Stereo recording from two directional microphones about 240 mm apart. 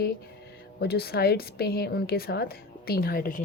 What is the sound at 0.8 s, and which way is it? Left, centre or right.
A woman's voice, left.